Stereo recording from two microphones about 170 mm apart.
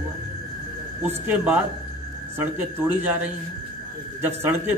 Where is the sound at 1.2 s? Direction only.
10° right (ahead or behind).